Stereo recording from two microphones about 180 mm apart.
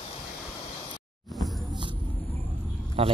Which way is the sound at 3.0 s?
30° right (ahead or behind).